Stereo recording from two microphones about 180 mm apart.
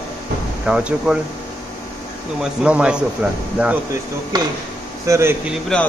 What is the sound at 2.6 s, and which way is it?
A man's voice, 5° right (ahead or behind).